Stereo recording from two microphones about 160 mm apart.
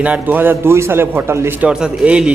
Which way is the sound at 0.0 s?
10° right (ahead or behind).